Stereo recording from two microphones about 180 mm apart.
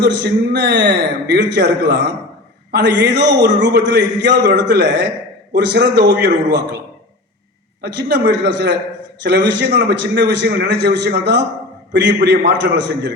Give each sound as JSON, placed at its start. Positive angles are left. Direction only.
{"t": 0.0, "sound": "a man's voice", "side_deg": -70}
{"t": 7.8, "sound": "a man's voice", "side_deg": -70}